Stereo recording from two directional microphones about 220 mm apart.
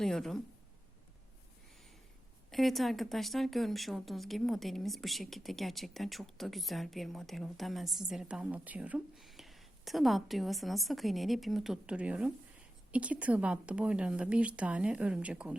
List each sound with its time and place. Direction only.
0.0 s speech: centre (ahead or behind)
2.5 s speech: centre (ahead or behind)